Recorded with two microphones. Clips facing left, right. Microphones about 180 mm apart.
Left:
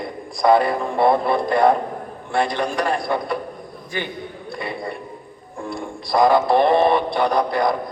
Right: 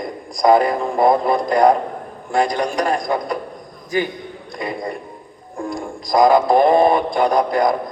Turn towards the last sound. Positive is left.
turn(degrees=-45)  # may be behind; listen again after turning